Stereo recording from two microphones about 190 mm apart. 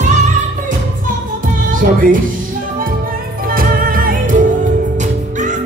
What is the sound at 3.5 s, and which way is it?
Music, 50° right (ahead or behind).